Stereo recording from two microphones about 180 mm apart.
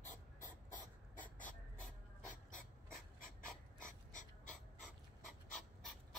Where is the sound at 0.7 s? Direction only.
45° left (ahead or behind).